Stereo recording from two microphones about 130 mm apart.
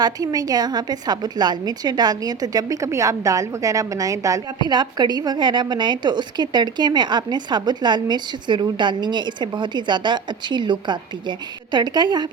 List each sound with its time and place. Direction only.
0.0 s a woman's voice: 30° right (ahead or behind)